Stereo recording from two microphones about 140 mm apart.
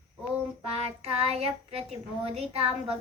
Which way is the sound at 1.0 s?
45° right (ahead or behind).